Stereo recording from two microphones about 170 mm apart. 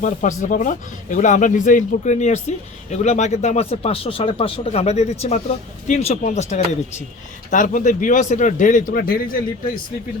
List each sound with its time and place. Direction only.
0.0 s speech: 45° left (ahead or behind)
8.9 s a man's voice: 60° left (ahead or behind)